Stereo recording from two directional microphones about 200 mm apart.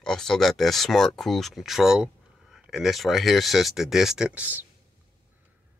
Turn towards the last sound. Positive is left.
turn(degrees=-5)  # may be behind; listen again after turning